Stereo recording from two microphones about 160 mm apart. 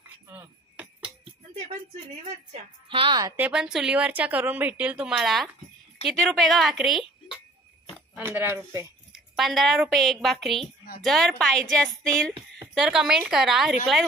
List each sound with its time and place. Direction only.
0.3 s a sound: 10° right (ahead or behind)
2.5 s a woman's voice: 35° right (ahead or behind)
3.3 s a woman's voice: 5° right (ahead or behind)
8.2 s a woman's voice: 15° right (ahead or behind)
9.3 s a woman's voice: centre (ahead or behind)